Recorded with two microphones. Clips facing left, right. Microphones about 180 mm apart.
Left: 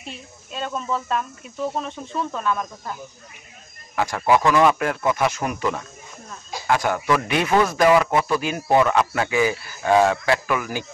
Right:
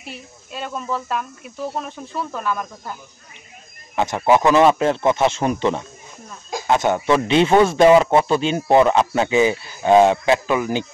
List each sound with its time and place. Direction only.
0.0 s speech: 5° right (ahead or behind)
3.9 s a man's voice: 20° right (ahead or behind)